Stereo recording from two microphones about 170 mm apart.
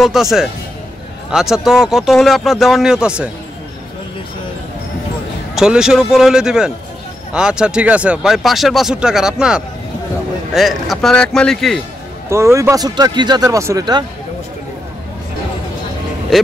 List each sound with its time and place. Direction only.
0.0 s speech: centre (ahead or behind)
5.6 s speech: 5° right (ahead or behind)
12.3 s speech: 15° right (ahead or behind)